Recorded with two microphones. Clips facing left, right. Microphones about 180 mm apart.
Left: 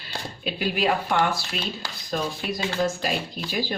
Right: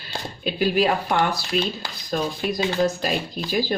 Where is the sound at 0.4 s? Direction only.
40° right (ahead or behind).